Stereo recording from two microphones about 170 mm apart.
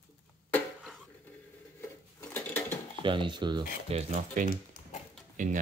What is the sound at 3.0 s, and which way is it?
Dishes, 30° right (ahead or behind).